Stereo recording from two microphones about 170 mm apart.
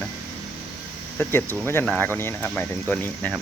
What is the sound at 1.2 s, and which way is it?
Speech, 10° left (ahead or behind).